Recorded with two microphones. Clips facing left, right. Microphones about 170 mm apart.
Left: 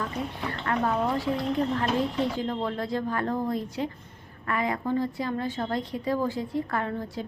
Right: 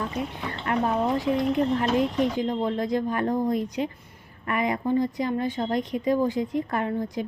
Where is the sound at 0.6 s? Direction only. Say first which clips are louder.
Right 2 dB; 20° right (ahead or behind).